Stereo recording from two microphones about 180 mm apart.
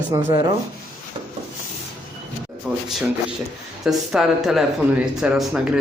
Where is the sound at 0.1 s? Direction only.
20° right (ahead or behind).